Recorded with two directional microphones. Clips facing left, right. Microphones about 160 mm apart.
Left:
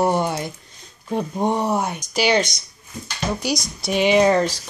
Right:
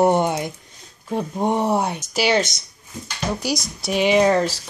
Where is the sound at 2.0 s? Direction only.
5° right (ahead or behind).